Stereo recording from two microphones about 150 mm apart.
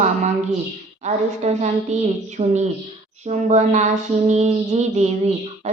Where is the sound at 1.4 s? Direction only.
45° right (ahead or behind).